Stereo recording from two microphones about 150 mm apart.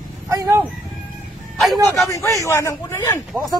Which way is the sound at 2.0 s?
20° left (ahead or behind).